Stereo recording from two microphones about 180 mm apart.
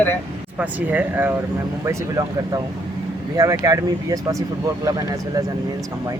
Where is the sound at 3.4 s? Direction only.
20° right (ahead or behind).